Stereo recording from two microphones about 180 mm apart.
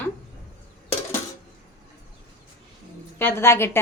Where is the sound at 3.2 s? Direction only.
10° left (ahead or behind).